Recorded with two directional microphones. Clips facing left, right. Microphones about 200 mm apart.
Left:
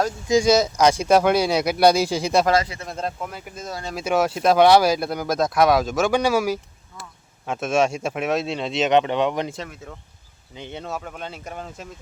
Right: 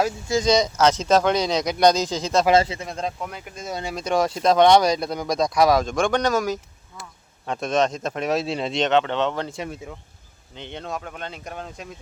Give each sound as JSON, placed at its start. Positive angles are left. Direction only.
{"t": 0.3, "sound": "speech", "side_deg": 10}
{"t": 2.5, "sound": "speech", "side_deg": -25}
{"t": 2.8, "sound": "speech", "side_deg": 0}
{"t": 3.7, "sound": "speech", "side_deg": -15}
{"t": 3.9, "sound": "speech", "side_deg": 5}
{"t": 8.9, "sound": "speech", "side_deg": 15}